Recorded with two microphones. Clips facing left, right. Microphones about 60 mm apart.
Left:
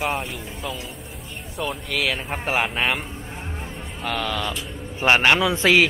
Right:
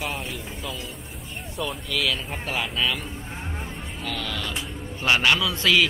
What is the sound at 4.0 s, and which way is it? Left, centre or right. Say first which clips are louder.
Speech: left 6 dB; centre.